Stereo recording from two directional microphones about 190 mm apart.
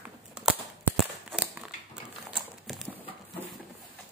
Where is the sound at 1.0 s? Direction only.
5° right (ahead or behind).